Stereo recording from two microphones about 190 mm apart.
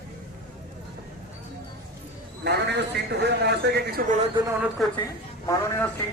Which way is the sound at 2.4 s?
60° right (ahead or behind).